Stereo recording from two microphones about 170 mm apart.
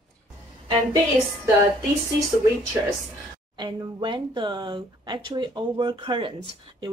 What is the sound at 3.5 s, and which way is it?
Speech, 25° right (ahead or behind).